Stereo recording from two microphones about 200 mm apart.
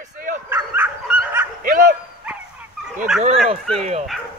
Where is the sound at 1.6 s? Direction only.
45° right (ahead or behind).